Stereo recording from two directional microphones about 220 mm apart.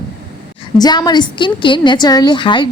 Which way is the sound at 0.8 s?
20° left (ahead or behind).